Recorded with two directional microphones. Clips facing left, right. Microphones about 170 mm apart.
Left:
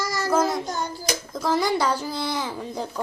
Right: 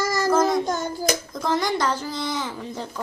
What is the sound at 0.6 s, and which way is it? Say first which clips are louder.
Hands: right 4 dB; 45° right (ahead or behind).